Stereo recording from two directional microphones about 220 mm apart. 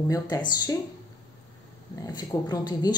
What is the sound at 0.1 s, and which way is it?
Speech, 20° left (ahead or behind).